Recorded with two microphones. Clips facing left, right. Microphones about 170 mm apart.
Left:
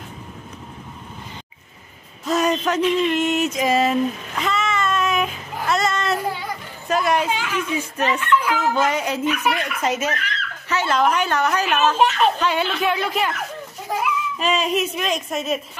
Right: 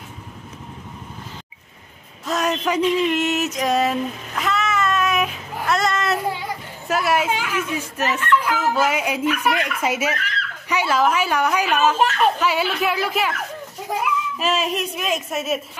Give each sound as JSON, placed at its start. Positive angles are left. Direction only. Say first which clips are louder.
{"t": 2.2, "sound": "a sound", "louder": "left 2 dB", "side_deg": 0}
{"t": 6.9, "sound": "a woman's voice", "louder": "even", "side_deg": -5}
{"t": 14.4, "sound": "speech", "louder": "left 2 dB", "side_deg": 0}